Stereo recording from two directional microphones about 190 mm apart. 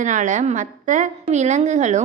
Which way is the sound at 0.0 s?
40° right (ahead or behind).